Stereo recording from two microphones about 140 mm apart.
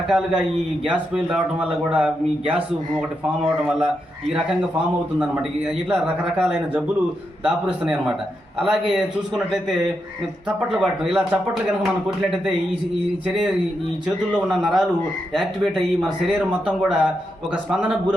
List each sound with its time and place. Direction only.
0.1 s a man's voice: 5° right (ahead or behind)
3.4 s a man's voice: 5° right (ahead or behind)
13.2 s a man's voice: 5° right (ahead or behind)